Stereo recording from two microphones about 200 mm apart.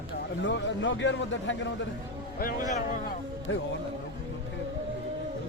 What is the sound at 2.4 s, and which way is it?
Speech, 45° left (ahead or behind).